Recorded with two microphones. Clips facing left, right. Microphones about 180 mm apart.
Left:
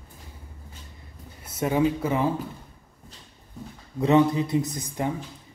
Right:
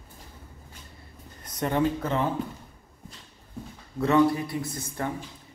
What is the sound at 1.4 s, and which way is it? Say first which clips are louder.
Speech: left 2 dB; 5° left (ahead or behind).